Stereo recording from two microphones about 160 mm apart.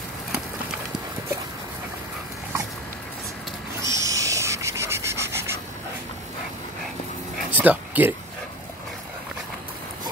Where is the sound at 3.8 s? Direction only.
20° right (ahead or behind).